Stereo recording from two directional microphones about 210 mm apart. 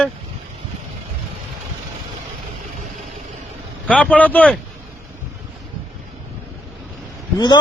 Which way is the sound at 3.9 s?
5° left (ahead or behind).